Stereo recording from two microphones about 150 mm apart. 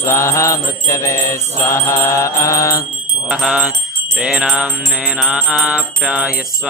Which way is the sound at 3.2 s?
5° right (ahead or behind).